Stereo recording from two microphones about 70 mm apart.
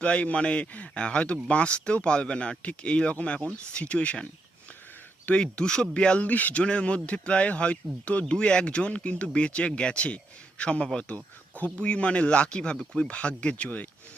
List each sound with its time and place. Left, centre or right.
0.0 s speech: centre